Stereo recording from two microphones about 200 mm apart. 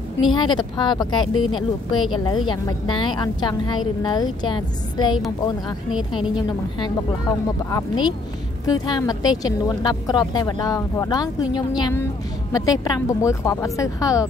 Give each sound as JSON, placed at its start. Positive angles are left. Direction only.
{"t": 0.2, "sound": "a woman's voice", "side_deg": 25}
{"t": 6.3, "sound": "a woman's voice", "side_deg": 20}